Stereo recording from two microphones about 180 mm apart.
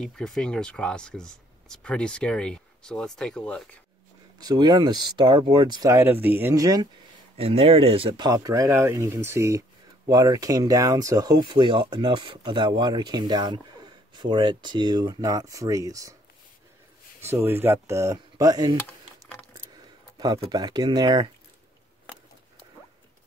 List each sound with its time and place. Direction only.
0.0 s speech: 5° left (ahead or behind)
4.4 s speech: 20° right (ahead or behind)
7.3 s speech: 35° right (ahead or behind)
8.1 s speech: 20° right (ahead or behind)
17.3 s speech: 15° right (ahead or behind)
20.2 s speech: 20° right (ahead or behind)